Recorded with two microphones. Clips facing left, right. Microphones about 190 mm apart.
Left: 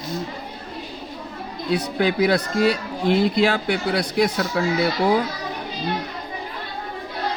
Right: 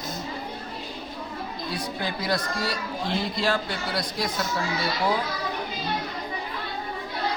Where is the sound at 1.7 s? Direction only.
70° left (ahead or behind).